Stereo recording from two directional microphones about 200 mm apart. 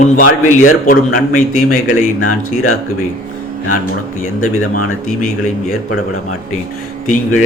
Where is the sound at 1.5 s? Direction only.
90° left.